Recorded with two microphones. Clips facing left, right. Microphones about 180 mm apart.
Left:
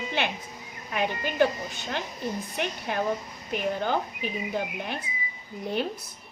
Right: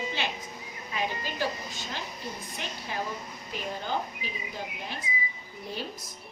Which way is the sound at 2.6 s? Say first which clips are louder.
Left 9 dB; 60° left (ahead or behind).